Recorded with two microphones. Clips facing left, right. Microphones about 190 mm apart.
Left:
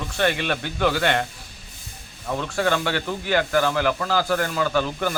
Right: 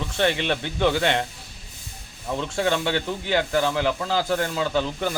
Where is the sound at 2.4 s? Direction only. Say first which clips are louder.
Left 1 dB; 20° right (ahead or behind).